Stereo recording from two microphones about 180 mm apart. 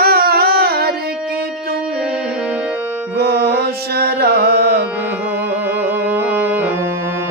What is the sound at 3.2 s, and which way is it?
Carnatic music, 60° right (ahead or behind).